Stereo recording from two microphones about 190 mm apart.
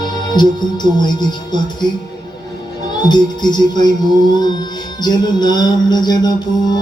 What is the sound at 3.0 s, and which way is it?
Music, 20° left (ahead or behind).